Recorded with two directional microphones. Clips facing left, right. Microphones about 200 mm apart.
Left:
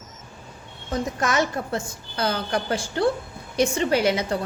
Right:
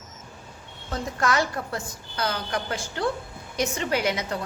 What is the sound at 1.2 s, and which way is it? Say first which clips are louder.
A woman's voice: right 1 dB; 20° left (ahead or behind).